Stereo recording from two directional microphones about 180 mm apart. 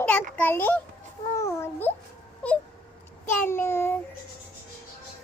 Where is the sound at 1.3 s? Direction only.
15° left (ahead or behind).